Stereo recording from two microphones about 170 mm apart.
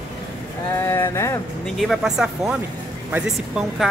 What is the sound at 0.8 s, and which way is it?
Speech, 15° left (ahead or behind).